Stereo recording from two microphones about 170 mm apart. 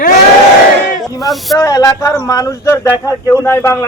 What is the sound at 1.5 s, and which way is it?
Speech, 20° left (ahead or behind).